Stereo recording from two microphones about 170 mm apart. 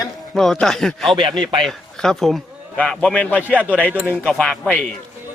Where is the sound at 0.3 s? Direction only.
Centre (ahead or behind).